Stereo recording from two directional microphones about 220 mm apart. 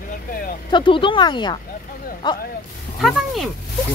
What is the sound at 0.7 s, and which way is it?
Speech, 20° left (ahead or behind).